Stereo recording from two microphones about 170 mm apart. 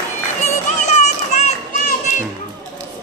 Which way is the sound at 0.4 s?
40° left (ahead or behind).